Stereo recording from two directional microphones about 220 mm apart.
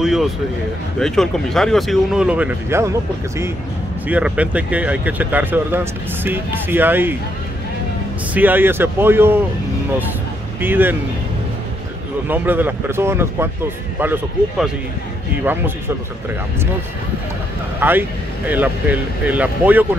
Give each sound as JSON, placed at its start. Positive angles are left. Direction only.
{"t": 0.0, "sound": "a sound", "side_deg": 0}
{"t": 0.9, "sound": "speech", "side_deg": 0}
{"t": 8.4, "sound": "speech", "side_deg": -10}
{"t": 10.6, "sound": "speech", "side_deg": -10}
{"t": 12.3, "sound": "speech", "side_deg": -10}
{"t": 17.7, "sound": "speech", "side_deg": -10}